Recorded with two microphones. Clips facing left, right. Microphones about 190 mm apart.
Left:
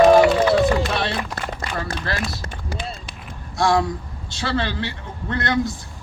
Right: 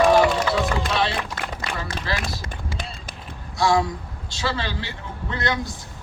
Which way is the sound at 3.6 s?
55° left (ahead or behind).